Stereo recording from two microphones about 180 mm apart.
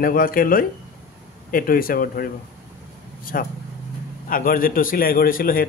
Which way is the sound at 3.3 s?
50° left (ahead or behind).